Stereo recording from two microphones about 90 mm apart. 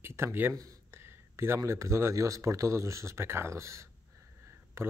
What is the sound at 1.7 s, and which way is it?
Speech, 30° right (ahead or behind).